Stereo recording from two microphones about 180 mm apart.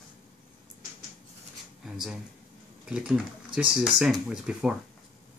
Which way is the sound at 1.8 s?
Centre (ahead or behind).